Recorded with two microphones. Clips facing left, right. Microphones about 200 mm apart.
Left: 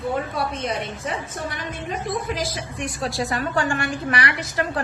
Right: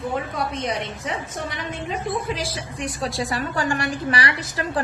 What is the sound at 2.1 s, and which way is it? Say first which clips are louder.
A woman's voice: left 1 dB; 30° right (ahead or behind).